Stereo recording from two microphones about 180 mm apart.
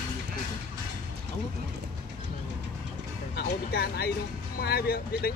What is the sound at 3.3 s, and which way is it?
Speech, 60° left (ahead or behind).